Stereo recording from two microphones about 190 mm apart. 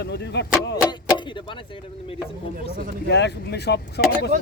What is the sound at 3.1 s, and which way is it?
Speech, 65° left (ahead or behind).